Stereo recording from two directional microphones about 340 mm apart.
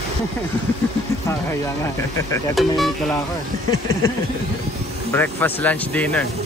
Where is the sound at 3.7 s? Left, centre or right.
Left.